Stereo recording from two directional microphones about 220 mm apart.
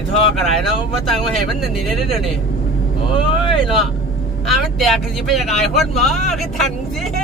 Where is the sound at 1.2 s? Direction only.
Centre (ahead or behind).